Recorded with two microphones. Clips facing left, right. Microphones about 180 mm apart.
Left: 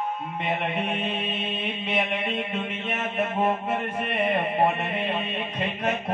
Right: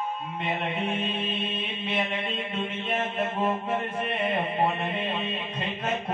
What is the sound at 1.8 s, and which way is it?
Mantra, 70° left (ahead or behind).